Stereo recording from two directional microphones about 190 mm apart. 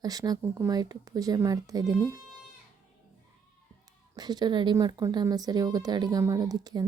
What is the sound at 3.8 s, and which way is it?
Speech, 20° right (ahead or behind).